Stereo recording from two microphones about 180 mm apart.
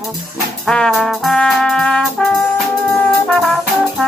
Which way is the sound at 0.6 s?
5° left (ahead or behind).